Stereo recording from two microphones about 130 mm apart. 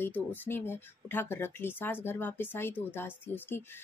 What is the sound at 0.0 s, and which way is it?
Speech, 15° left (ahead or behind).